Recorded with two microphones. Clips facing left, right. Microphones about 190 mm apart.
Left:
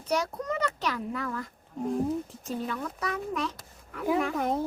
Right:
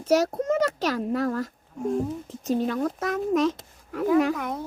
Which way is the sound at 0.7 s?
75° right (ahead or behind).